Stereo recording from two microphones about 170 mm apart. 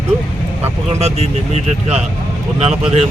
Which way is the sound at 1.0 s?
40° right (ahead or behind).